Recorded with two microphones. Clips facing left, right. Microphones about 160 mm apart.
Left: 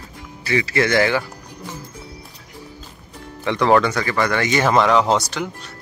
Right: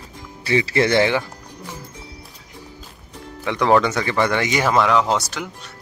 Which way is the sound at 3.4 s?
10° right (ahead or behind).